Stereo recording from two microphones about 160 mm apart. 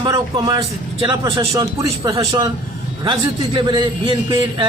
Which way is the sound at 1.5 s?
20° right (ahead or behind).